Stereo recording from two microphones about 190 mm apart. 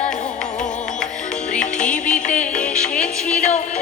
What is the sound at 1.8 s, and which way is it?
Music, 5° left (ahead or behind).